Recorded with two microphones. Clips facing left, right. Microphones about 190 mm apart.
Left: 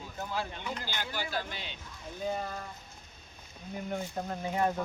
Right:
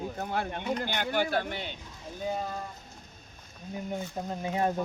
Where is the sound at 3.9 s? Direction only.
15° right (ahead or behind).